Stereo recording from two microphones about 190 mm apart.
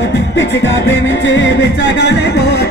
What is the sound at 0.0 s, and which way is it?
Music, 65° left (ahead or behind).